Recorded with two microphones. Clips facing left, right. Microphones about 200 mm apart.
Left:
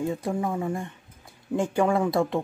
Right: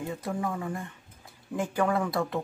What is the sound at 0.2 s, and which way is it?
Speech, 30° left (ahead or behind).